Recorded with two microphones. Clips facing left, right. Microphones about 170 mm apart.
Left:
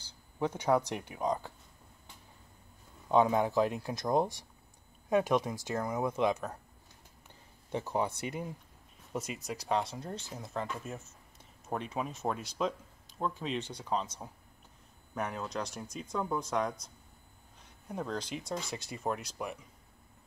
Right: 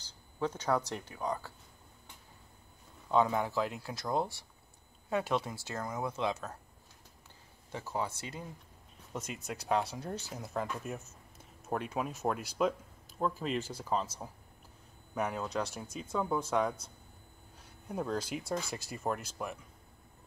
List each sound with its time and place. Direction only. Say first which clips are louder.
0.4 s speech: left 3 dB; 10° left (ahead or behind)
3.1 s speech: left 3 dB; 15° left (ahead or behind)
7.7 s speech: left 4 dB; 20° left (ahead or behind)
9.3 s speech: right 1 dB; centre (ahead or behind)
17.8 s speech: right 2 dB; 5° right (ahead or behind)